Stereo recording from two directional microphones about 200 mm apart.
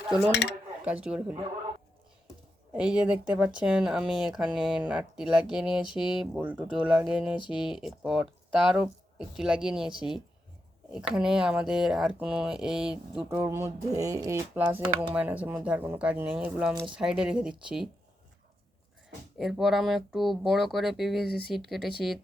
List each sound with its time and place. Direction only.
0.3 s speech: 60° left (ahead or behind)
0.9 s speech: 5° right (ahead or behind)
2.7 s speech: 5° right (ahead or behind)
10.9 s speech: 5° right (ahead or behind)
19.4 s speech: centre (ahead or behind)
21.2 s speech: 55° left (ahead or behind)
21.5 s speech: centre (ahead or behind)